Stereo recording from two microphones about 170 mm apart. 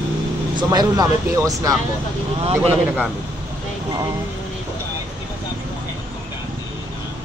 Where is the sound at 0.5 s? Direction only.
25° right (ahead or behind).